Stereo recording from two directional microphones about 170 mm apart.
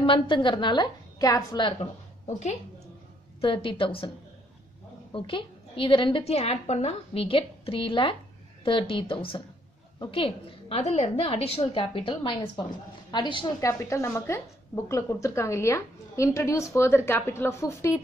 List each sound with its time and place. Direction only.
0.0 s a woman's voice: 30° left (ahead or behind)
3.3 s a woman's voice: 30° left (ahead or behind)
5.1 s a woman's voice: 30° left (ahead or behind)
13.7 s a woman's voice: 15° left (ahead or behind)